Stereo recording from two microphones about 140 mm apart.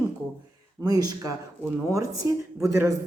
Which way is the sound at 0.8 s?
25° right (ahead or behind).